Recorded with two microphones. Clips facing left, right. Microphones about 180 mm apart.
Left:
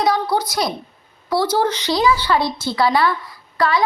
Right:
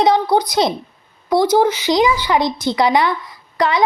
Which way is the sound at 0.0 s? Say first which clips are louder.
Right 4 dB; 20° right (ahead or behind).